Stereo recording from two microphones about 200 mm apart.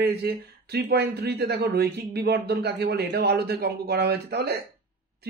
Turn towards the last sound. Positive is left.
turn(degrees=-55)  # may be behind; listen again after turning